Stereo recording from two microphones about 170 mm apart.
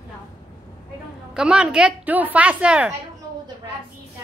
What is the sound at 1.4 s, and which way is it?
A woman's voice, 5° right (ahead or behind).